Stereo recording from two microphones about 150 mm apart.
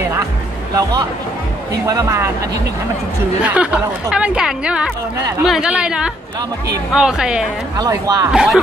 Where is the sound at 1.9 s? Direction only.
20° right (ahead or behind).